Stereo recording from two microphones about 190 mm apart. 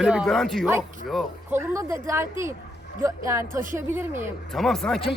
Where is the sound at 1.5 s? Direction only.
15° right (ahead or behind).